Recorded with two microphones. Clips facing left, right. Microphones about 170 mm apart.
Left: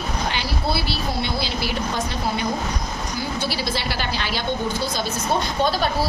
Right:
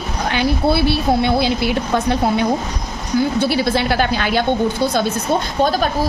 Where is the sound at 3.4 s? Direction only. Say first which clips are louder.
Right 9 dB; 60° right (ahead or behind).